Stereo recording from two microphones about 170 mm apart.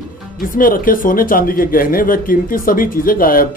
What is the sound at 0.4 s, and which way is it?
Speech, 55° left (ahead or behind).